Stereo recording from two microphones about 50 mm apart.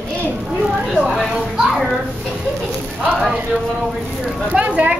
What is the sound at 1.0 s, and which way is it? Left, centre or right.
Speech, centre.